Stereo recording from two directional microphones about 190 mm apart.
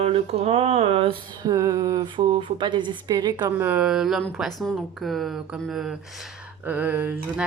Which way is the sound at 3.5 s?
10° right (ahead or behind).